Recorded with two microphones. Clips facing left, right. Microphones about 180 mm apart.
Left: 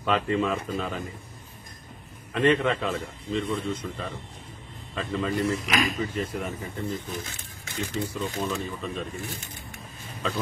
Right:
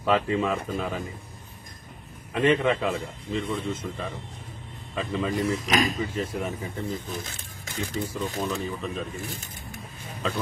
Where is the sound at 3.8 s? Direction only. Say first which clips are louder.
Right 1 dB; 10° right (ahead or behind).